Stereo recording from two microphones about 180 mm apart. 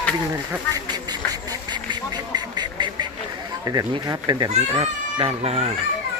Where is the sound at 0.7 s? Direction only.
20° right (ahead or behind).